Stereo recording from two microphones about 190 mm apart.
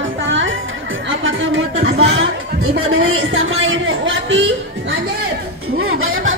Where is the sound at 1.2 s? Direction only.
85° right.